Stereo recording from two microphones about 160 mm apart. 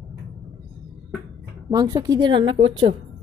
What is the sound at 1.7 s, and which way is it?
Speech, 25° right (ahead or behind).